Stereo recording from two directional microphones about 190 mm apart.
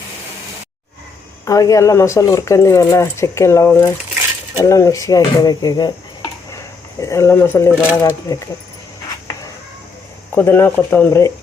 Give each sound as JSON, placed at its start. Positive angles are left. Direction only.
{"t": 1.5, "sound": "speech", "side_deg": 15}
{"t": 10.3, "sound": "speech", "side_deg": 10}